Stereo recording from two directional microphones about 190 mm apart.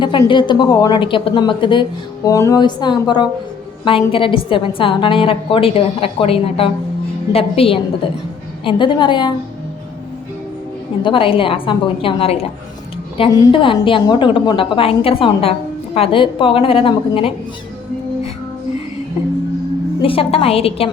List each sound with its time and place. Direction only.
0.0 s a woman's voice: 25° left (ahead or behind)
11.0 s a woman's voice: 25° left (ahead or behind)
20.0 s a woman's voice: 30° left (ahead or behind)